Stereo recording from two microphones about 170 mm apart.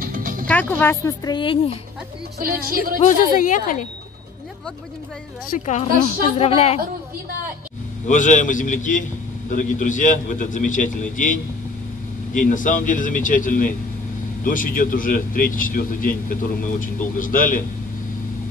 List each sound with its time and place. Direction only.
0.0 s music: 55° right (ahead or behind)
0.5 s speech: 10° left (ahead or behind); by 1.8 s 30° left (ahead or behind)
2.3 s speech: 60° right (ahead or behind)
3.1 s a man's voice: 50° left (ahead or behind)
5.5 s a man's voice: 45° left (ahead or behind)
8.1 s a man's voice: 50° left (ahead or behind)
12.4 s a man's voice: 50° left (ahead or behind)